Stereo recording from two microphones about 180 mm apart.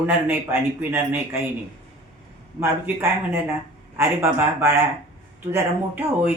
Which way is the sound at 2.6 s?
10° right (ahead or behind).